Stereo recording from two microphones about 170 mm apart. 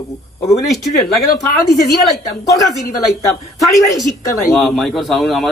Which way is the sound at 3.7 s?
20° left (ahead or behind).